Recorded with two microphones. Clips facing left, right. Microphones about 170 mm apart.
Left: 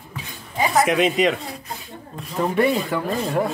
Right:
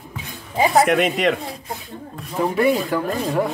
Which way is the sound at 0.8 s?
Centre (ahead or behind).